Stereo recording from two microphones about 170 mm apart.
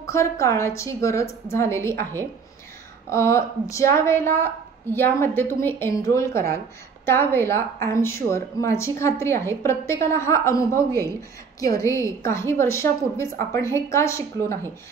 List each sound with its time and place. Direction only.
0.0 s a woman's voice: 15° left (ahead or behind)
3.1 s a woman's voice: 15° left (ahead or behind)